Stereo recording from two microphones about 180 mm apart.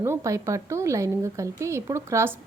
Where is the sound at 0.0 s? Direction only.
15° right (ahead or behind).